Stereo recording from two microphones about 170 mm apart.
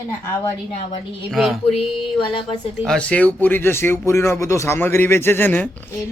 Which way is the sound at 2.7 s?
5° left (ahead or behind).